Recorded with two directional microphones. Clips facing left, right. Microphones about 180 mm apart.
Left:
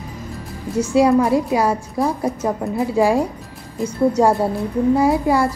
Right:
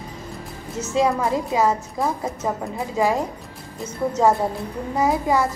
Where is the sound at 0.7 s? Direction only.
10° left (ahead or behind).